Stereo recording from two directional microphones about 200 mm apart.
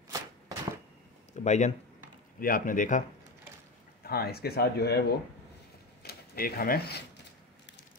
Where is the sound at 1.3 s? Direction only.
35° left (ahead or behind).